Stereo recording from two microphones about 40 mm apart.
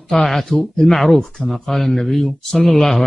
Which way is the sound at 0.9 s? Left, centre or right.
Centre.